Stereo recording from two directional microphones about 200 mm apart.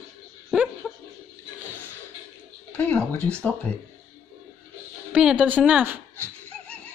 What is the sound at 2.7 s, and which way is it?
Speech, 5° left (ahead or behind).